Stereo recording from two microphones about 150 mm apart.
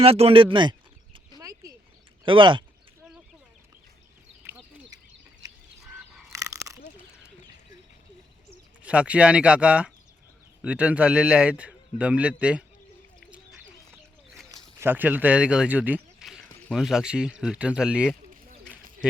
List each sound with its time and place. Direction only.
0.0 s speech: 40° right (ahead or behind)
1.4 s a sound: 25° right (ahead or behind)
2.2 s speech: 35° right (ahead or behind)
4.4 s duck: 15° right (ahead or behind)
6.3 s biting: 20° right (ahead or behind)
8.8 s a man's voice: 10° right (ahead or behind)
14.5 s speech: 15° right (ahead or behind)
16.2 s a sound: 5° right (ahead or behind)
16.7 s speech: 5° right (ahead or behind)
18.8 s a sound: 65° right (ahead or behind)